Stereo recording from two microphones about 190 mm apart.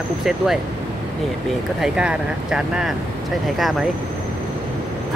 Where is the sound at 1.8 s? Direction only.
5° right (ahead or behind).